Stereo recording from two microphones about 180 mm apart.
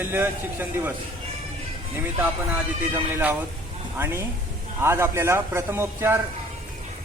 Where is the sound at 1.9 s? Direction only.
10° right (ahead or behind).